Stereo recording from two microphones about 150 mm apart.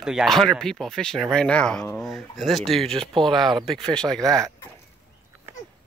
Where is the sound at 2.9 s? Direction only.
35° right (ahead or behind).